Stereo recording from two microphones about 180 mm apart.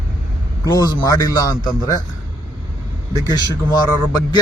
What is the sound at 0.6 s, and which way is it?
Speech, 20° left (ahead or behind).